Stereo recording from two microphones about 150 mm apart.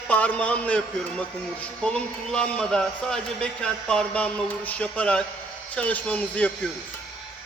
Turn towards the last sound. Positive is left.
turn(degrees=10)  # may be behind; listen again after turning